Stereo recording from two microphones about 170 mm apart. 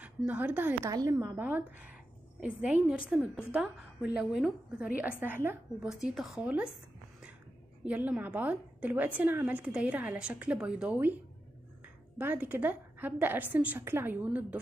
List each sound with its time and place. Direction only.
0.0 s a woman's voice: 10° right (ahead or behind)
7.8 s a woman's voice: 10° right (ahead or behind)
12.2 s a woman's voice: 10° right (ahead or behind)